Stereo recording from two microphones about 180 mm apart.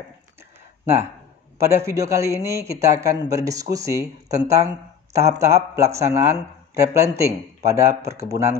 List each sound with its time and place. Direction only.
1.6 s a man's voice: 15° right (ahead or behind)